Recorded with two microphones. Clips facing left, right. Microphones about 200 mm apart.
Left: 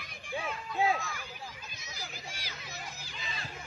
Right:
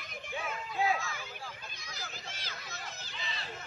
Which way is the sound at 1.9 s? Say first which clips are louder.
Left 1 dB; 15° left (ahead or behind).